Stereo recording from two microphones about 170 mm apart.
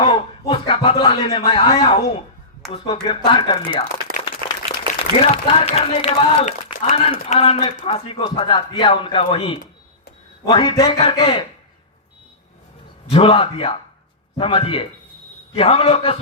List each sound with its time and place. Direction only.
0.0 s speech: 35° left (ahead or behind)
2.8 s speech: 25° left (ahead or behind)
13.1 s speech: 35° left (ahead or behind)